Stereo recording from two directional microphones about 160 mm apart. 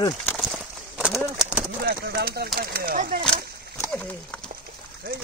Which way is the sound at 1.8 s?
80° right.